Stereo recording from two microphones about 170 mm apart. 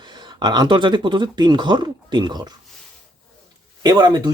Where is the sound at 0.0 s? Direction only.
25° right (ahead or behind).